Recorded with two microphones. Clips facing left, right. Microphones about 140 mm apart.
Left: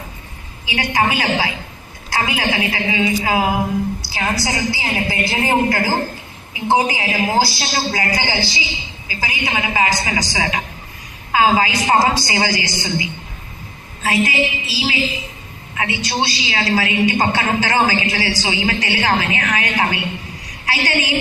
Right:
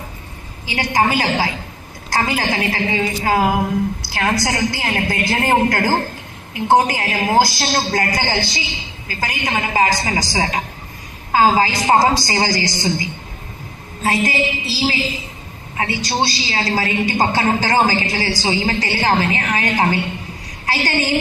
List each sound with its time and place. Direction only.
0.7 s a man's voice: 40° right (ahead or behind)
4.2 s a woman's voice: 50° right (ahead or behind)